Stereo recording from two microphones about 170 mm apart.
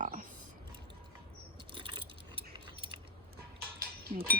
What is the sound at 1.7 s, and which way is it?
Keys jangling, 30° right (ahead or behind).